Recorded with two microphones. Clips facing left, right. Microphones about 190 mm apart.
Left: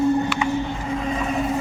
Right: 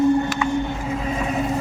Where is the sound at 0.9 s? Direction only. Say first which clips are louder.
Left 1 dB; 5° right (ahead or behind).